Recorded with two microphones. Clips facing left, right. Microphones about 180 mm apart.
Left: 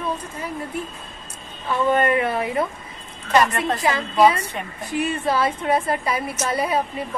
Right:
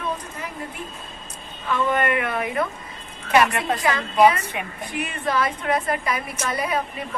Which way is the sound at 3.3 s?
10° right (ahead or behind).